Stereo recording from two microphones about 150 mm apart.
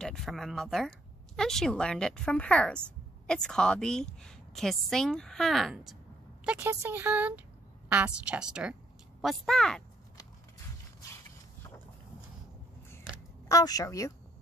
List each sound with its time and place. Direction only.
0.0 s speech: centre (ahead or behind)
6.4 s speech: 15° right (ahead or behind); by 9.8 s 5° left (ahead or behind)
13.5 s a woman's voice: 25° left (ahead or behind)